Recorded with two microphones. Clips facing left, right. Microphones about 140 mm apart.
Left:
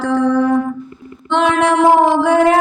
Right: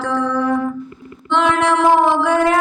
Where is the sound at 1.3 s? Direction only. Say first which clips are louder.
Left 2 dB; 15° left (ahead or behind).